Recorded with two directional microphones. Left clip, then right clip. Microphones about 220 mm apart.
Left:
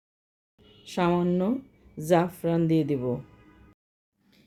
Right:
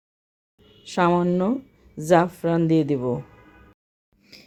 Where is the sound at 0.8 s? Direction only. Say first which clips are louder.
Right 5 dB; 15° right (ahead or behind).